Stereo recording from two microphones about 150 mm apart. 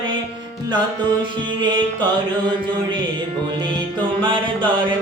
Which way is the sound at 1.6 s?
30° right (ahead or behind).